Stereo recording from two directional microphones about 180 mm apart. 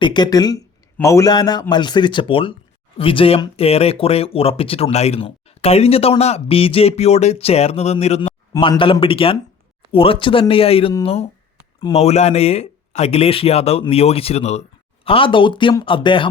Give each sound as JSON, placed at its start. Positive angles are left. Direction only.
{"t": 0.0, "sound": "speech", "side_deg": 25}
{"t": 8.5, "sound": "speech", "side_deg": 25}